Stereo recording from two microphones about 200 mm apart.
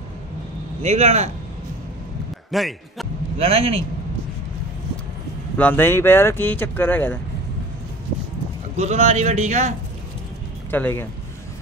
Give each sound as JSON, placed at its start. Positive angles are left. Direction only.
{"t": 0.8, "sound": "speech", "side_deg": -35}
{"t": 2.5, "sound": "a man's voice", "side_deg": 0}
{"t": 3.3, "sound": "a man's voice", "side_deg": -30}
{"t": 5.6, "sound": "speech", "side_deg": 10}
{"t": 8.7, "sound": "speech", "side_deg": -35}
{"t": 10.7, "sound": "speech", "side_deg": 10}